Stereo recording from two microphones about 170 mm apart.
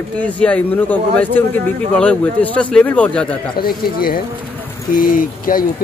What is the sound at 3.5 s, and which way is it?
Speech, 60° left (ahead or behind).